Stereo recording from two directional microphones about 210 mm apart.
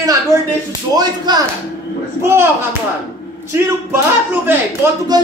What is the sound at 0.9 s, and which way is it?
Speech, 20° right (ahead or behind).